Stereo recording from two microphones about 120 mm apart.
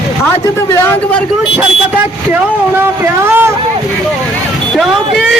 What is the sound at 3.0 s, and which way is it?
Speech, 20° right (ahead or behind).